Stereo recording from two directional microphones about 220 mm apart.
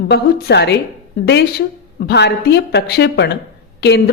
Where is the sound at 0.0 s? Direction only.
45° left (ahead or behind).